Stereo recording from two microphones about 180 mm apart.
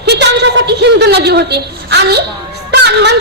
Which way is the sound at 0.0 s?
65° right (ahead or behind).